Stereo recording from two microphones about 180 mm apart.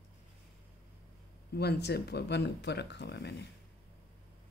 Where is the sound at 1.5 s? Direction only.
65° left (ahead or behind).